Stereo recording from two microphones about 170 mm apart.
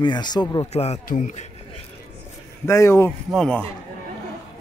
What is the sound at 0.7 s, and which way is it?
Speech, 40° left (ahead or behind).